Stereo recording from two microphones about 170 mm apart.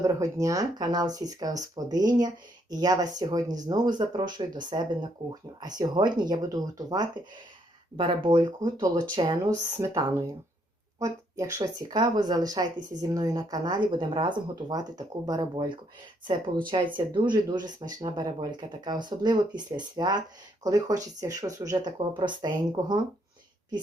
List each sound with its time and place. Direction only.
0.0 s speech: 20° right (ahead or behind)